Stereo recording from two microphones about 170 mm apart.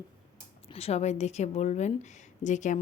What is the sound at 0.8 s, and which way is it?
A woman's voice, 40° left (ahead or behind).